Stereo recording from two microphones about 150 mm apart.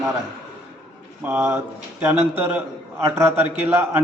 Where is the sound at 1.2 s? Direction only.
15° right (ahead or behind).